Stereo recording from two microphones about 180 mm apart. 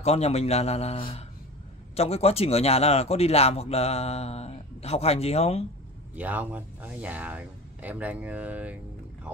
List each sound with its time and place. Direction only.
0.0 s speech: 35° left (ahead or behind)
6.1 s speech: 10° right (ahead or behind)